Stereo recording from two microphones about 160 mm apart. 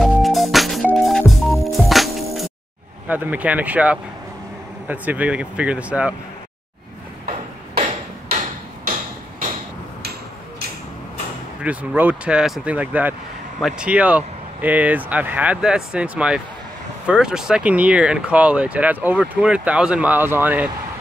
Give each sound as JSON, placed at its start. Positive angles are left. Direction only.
{"t": 0.0, "sound": "music", "side_deg": 0}
{"t": 3.1, "sound": "speech", "side_deg": -10}
{"t": 7.2, "sound": "hammer", "side_deg": -40}
{"t": 11.6, "sound": "speech", "side_deg": -10}